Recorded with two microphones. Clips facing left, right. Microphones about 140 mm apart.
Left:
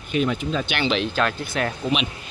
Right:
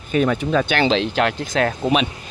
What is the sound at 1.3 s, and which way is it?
Speech, 90° right.